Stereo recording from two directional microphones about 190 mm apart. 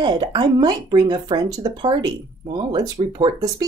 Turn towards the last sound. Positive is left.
turn(degrees=-20)  # may be behind; listen again after turning